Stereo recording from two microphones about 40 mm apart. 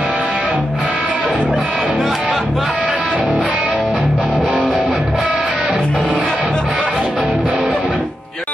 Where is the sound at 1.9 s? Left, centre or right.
Centre.